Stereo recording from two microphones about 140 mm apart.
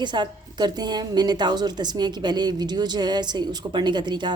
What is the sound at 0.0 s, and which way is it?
A woman's voice, 35° right (ahead or behind).